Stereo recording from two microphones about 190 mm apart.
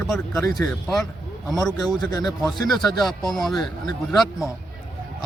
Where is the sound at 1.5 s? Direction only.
Centre (ahead or behind).